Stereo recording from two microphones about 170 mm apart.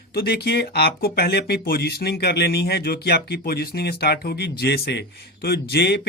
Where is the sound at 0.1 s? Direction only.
65° left (ahead or behind).